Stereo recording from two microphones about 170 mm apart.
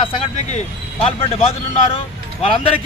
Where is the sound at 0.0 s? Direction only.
40° left (ahead or behind).